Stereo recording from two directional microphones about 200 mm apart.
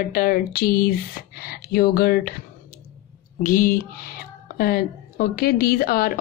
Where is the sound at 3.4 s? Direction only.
45° left (ahead or behind).